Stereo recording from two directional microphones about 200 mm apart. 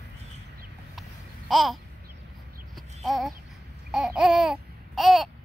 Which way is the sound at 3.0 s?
Centre (ahead or behind).